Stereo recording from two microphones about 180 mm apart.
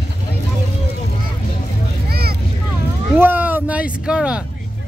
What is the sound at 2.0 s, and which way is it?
Vehicle, 60° right (ahead or behind).